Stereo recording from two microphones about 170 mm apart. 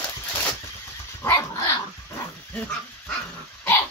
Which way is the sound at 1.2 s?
15° left (ahead or behind).